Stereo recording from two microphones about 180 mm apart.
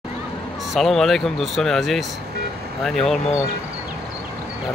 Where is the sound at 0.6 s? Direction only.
Centre (ahead or behind).